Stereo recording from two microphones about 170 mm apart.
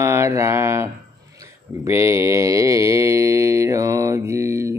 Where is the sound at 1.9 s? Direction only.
15° right (ahead or behind).